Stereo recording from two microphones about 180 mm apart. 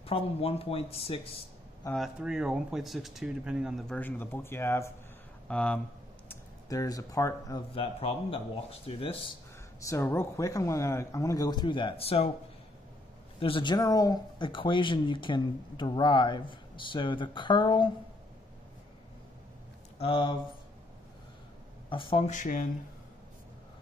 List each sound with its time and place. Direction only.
0.0 s speech: 30° left (ahead or behind)
2.0 s speech: 5° right (ahead or behind)
3.9 s speech: 10° left (ahead or behind)
6.2 s speech: 20° left (ahead or behind)
7.7 s speech: 30° left (ahead or behind)
9.8 s speech: 15° left (ahead or behind); by 12.3 s 35° left (ahead or behind)
13.4 s speech: 30° left (ahead or behind)
20.0 s speech: 30° left (ahead or behind)
21.8 s speech: 30° left (ahead or behind)
22.3 s speech: 45° left (ahead or behind)